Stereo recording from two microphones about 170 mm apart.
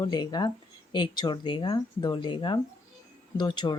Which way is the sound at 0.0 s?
25° left (ahead or behind).